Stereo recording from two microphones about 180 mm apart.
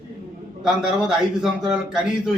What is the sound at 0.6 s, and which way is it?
A man's voice, 5° right (ahead or behind).